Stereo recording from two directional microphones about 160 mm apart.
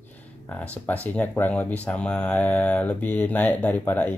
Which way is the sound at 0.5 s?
10° left (ahead or behind).